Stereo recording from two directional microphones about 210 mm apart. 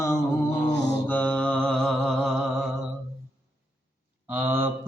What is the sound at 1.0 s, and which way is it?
Mantra, 5° left (ahead or behind).